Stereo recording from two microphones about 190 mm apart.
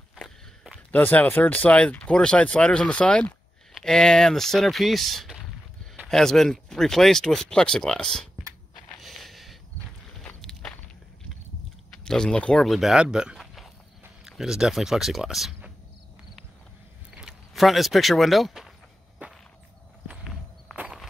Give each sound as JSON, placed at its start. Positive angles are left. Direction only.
{"t": 0.1, "sound": "speech", "side_deg": 0}
{"t": 9.0, "sound": "a sound", "side_deg": 0}
{"t": 10.2, "sound": "walk", "side_deg": 5}
{"t": 12.0, "sound": "speech", "side_deg": 5}
{"t": 17.1, "sound": "speech", "side_deg": -5}
{"t": 19.2, "sound": "whip", "side_deg": -5}
{"t": 20.1, "sound": "walk", "side_deg": -5}